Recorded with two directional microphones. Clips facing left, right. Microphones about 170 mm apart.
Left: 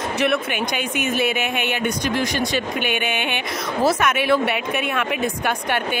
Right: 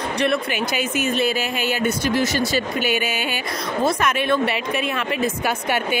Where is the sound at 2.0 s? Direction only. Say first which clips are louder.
Right 3 dB; 55° left (ahead or behind).